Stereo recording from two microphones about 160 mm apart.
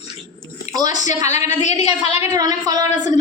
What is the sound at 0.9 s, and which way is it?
A woman's voice, 50° left (ahead or behind).